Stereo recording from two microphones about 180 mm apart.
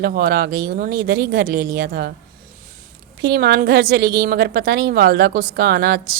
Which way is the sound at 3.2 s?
60° right (ahead or behind).